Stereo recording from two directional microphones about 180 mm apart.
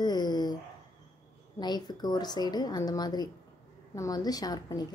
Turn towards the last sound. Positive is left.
turn(degrees=20)  # may be behind; listen again after turning